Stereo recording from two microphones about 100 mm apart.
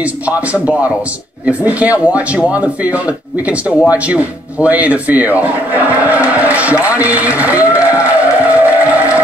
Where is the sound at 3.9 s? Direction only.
15° right (ahead or behind).